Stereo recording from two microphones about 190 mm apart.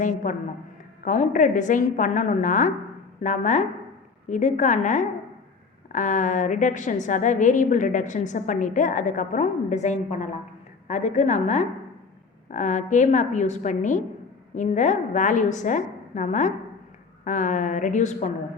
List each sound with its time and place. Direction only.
0.0 s a woman's voice: 40° left (ahead or behind)